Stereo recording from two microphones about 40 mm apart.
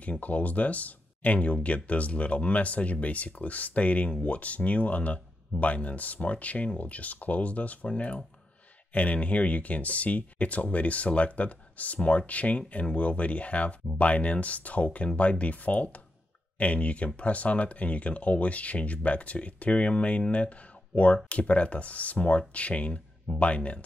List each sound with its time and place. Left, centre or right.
0.0 s speech: left